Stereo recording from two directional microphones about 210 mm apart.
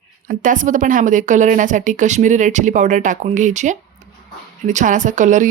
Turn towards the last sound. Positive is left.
turn(degrees=-35)  # may be behind; listen again after turning